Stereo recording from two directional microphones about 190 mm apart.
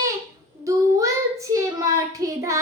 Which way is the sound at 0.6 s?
15° right (ahead or behind).